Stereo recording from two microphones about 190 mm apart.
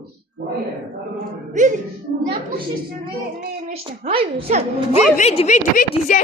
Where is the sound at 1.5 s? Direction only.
40° right (ahead or behind).